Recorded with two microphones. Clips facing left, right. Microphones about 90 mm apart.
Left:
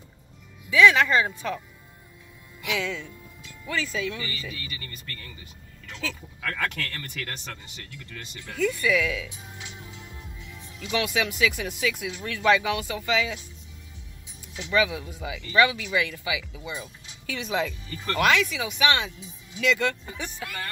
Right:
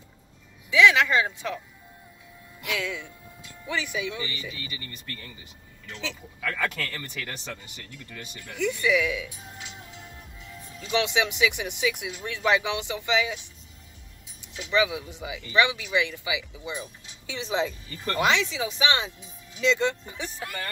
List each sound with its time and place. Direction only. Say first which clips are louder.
0.7 s speech: left 1 dB; 15° right (ahead or behind)
2.6 s speech: left 2 dB; centre (ahead or behind)
3.6 s speech: left 1 dB; 15° right (ahead or behind)
6.6 s speech: even; 5° right (ahead or behind)
8.1 s speech: left 1 dB; 20° right (ahead or behind)
10.9 s speech: right 1 dB; 25° right (ahead or behind)
14.4 s speech: even; 20° right (ahead or behind)
20.2 s speech: even; 35° right (ahead or behind)